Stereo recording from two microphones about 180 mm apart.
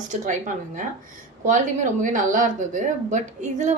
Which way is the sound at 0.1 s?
45° right (ahead or behind).